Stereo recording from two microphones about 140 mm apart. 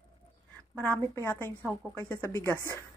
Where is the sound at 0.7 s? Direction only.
15° left (ahead or behind).